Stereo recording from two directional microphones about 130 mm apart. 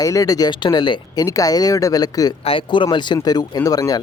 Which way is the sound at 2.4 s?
40° left (ahead or behind).